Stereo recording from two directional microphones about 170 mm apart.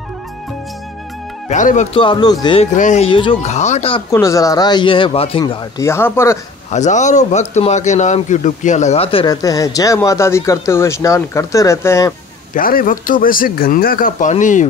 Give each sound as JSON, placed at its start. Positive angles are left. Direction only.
{"t": 1.5, "sound": "speech", "side_deg": 45}
{"t": 2.0, "sound": "speech", "side_deg": 30}
{"t": 2.7, "sound": "speech", "side_deg": 45}
{"t": 3.1, "sound": "speech", "side_deg": 30}
{"t": 4.1, "sound": "speech", "side_deg": 20}
{"t": 5.4, "sound": "speech", "side_deg": 20}
{"t": 6.7, "sound": "speech", "side_deg": 45}
{"t": 9.3, "sound": "speech", "side_deg": 20}
{"t": 12.5, "sound": "speech", "side_deg": 55}